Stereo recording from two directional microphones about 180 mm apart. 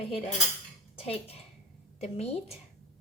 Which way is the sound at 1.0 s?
35° left (ahead or behind).